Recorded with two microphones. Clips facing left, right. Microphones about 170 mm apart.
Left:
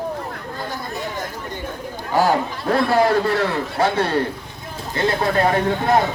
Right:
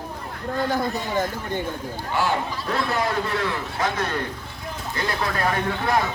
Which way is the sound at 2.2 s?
40° left (ahead or behind).